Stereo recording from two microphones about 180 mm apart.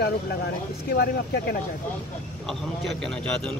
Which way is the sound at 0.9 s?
60° left (ahead or behind).